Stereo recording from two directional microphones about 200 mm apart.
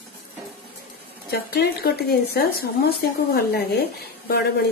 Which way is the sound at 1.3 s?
50° left (ahead or behind).